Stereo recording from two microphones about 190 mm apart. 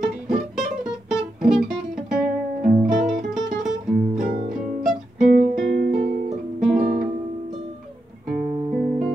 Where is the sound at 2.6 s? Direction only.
45° right (ahead or behind).